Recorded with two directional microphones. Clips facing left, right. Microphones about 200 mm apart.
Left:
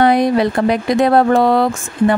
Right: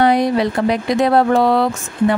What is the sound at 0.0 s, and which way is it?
Speech, 55° left (ahead or behind).